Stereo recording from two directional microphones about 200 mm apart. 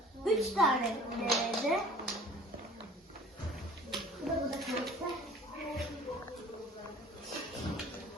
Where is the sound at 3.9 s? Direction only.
Centre (ahead or behind).